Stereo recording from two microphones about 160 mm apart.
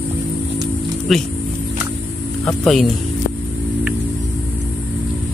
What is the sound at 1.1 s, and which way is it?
Speech, centre (ahead or behind).